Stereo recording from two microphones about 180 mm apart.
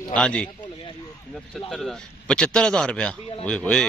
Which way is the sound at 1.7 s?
Centre (ahead or behind).